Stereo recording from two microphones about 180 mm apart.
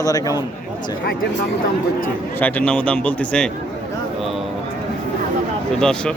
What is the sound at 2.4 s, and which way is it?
Speech, 10° left (ahead or behind).